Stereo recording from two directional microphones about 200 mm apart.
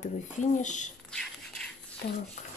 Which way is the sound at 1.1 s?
5° left (ahead or behind).